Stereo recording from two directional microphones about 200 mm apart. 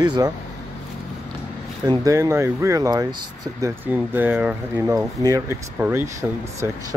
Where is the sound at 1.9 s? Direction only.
15° right (ahead or behind).